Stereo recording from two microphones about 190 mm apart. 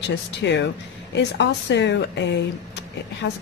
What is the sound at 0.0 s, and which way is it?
Speech, 65° left (ahead or behind).